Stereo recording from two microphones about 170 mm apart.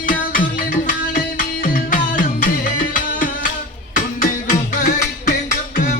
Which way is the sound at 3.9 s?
50° left (ahead or behind).